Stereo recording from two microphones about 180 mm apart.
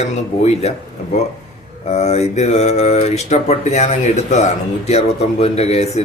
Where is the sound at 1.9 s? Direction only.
35° left (ahead or behind).